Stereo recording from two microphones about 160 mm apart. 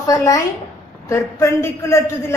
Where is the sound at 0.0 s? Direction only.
25° left (ahead or behind).